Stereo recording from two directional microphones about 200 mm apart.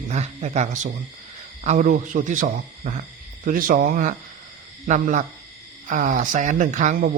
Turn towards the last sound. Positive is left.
turn(degrees=-40)  # may be behind; listen again after turning